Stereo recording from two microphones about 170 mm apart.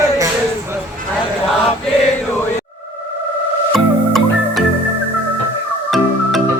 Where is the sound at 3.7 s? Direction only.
Centre (ahead or behind).